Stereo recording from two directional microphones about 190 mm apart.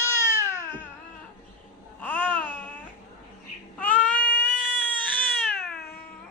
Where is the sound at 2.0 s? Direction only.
10° left (ahead or behind).